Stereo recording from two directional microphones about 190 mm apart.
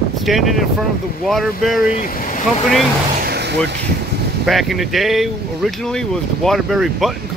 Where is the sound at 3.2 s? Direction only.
60° right (ahead or behind).